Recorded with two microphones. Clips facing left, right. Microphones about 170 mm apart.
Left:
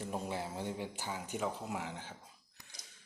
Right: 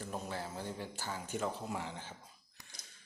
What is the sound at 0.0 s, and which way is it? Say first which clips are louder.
Speech: left 2 dB; 20° left (ahead or behind).